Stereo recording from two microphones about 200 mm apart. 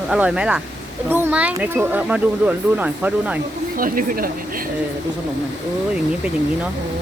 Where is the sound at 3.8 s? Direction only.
45° right (ahead or behind).